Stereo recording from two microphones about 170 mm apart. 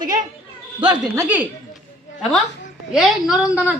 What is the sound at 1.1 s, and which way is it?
Speech, 10° right (ahead or behind).